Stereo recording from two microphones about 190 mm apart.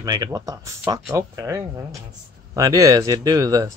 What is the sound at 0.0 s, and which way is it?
Speech, 20° right (ahead or behind).